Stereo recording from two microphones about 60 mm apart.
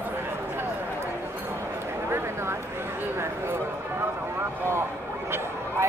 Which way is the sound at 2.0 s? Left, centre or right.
Right.